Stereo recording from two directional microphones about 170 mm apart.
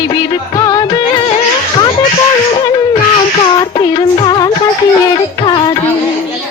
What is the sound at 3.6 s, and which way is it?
Music, 25° left (ahead or behind).